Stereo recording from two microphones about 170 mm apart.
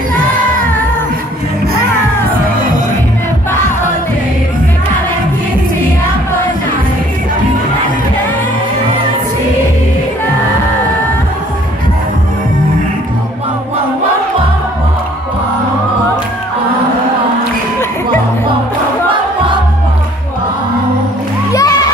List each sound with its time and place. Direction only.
21.5 s music: 20° left (ahead or behind)